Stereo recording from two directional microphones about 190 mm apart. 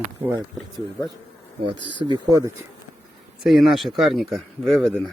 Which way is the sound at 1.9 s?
25° right (ahead or behind).